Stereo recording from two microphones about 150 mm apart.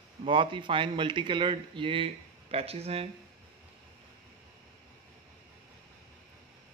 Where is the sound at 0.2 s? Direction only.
35° right (ahead or behind).